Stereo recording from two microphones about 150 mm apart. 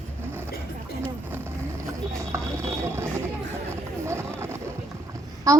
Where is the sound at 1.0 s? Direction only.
15° right (ahead or behind).